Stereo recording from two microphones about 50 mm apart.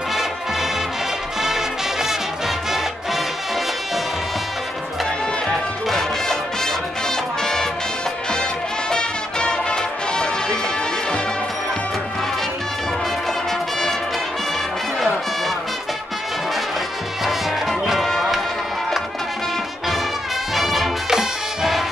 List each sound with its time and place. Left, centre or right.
0.1 s music: centre
5.9 s music: centre
8.9 s music: centre
13.5 s music: centre
17.2 s music: centre
20.5 s music: centre